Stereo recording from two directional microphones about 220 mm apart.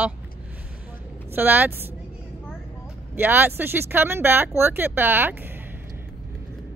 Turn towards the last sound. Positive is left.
turn(degrees=-10)  # may be behind; listen again after turning